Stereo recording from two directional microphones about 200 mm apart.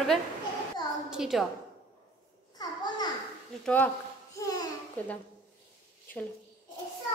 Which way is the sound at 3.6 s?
10° left (ahead or behind).